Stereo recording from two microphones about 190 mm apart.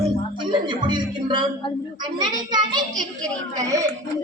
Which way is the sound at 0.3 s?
25° right (ahead or behind).